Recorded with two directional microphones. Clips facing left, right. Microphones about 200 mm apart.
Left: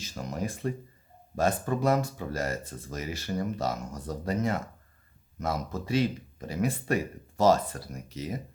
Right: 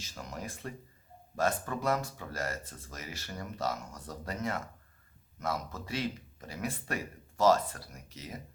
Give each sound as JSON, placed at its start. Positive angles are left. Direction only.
{"t": 0.0, "sound": "speech", "side_deg": 20}